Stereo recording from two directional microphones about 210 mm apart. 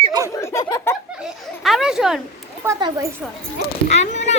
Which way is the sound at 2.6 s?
15° right (ahead or behind).